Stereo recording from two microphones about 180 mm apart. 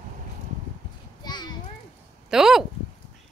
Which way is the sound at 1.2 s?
25° left (ahead or behind).